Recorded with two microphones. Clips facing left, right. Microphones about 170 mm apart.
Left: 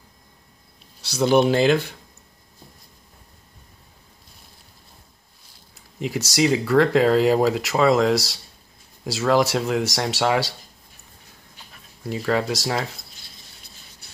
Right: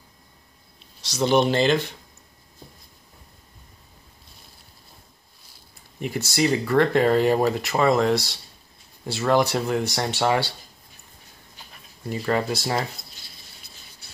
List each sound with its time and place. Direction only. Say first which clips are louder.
1.0 s speech: left 2 dB; 5° left (ahead or behind)
5.9 s speech: left 2 dB; 90° left
6.4 s speech: left 2 dB; 5° left (ahead or behind)
8.1 s speech: left 1 dB; 90° left
9.2 s speech: left 1 dB; 5° left (ahead or behind)
12.0 s speech: left 1 dB; centre (ahead or behind)